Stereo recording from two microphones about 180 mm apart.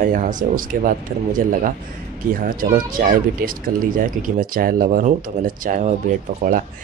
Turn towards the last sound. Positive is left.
turn(degrees=-50)  # may be behind; listen again after turning